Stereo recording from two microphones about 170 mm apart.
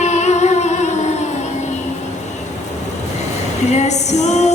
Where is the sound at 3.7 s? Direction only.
40° left (ahead or behind).